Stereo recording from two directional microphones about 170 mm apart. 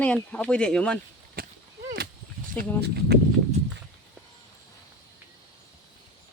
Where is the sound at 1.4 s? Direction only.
60° right (ahead or behind).